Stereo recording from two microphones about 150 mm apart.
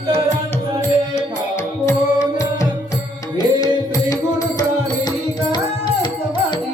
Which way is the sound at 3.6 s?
25° left (ahead or behind).